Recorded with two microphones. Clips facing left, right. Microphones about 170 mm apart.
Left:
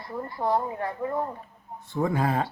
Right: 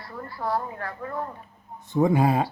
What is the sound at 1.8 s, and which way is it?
Speech, 15° right (ahead or behind).